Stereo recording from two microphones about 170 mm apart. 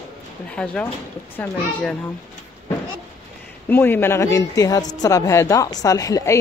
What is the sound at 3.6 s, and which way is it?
A woman's voice, 10° left (ahead or behind).